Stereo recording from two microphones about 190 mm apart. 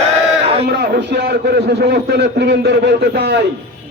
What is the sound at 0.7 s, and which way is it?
A man's voice, 60° right (ahead or behind).